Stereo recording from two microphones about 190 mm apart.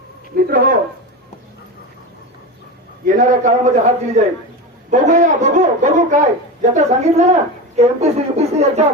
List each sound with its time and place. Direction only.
0.3 s a man's voice: 50° right (ahead or behind)
3.1 s a man's voice: 45° right (ahead or behind)